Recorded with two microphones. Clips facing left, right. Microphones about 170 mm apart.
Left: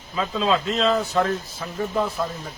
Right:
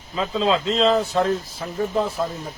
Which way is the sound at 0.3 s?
25° right (ahead or behind).